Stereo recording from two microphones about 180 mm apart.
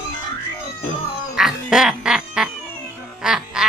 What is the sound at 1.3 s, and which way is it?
Quack, 5° right (ahead or behind).